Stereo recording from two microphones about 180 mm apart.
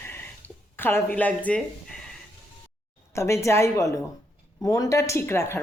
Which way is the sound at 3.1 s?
15° left (ahead or behind).